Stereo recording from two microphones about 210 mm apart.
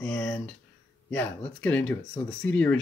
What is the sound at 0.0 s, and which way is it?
Speech, 5° left (ahead or behind).